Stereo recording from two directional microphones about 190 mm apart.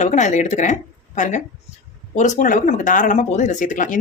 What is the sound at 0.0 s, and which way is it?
Speech, 40° left (ahead or behind).